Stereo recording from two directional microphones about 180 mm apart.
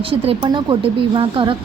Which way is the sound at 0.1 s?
30° right (ahead or behind).